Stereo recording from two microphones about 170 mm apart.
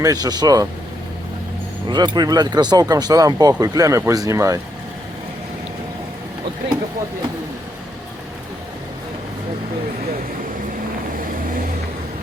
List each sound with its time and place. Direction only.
0.0 s speech: 20° right (ahead or behind)
1.9 s speech: 25° right (ahead or behind)